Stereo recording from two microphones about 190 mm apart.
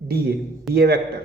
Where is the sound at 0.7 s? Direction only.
55° right (ahead or behind).